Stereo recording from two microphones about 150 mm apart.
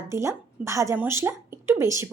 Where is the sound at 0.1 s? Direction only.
20° right (ahead or behind).